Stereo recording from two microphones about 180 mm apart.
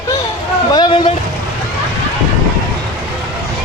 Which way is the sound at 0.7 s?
25° left (ahead or behind).